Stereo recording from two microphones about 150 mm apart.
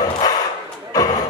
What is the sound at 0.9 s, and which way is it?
Slam, 25° left (ahead or behind).